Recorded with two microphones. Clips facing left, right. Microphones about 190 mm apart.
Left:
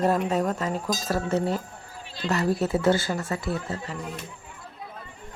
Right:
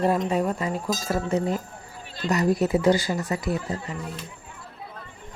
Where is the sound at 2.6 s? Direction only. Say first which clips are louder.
Right 1 dB; 15° right (ahead or behind).